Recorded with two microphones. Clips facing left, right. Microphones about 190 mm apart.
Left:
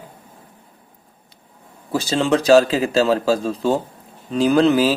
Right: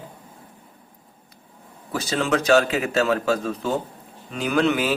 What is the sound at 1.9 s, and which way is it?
A man's voice, 30° left (ahead or behind).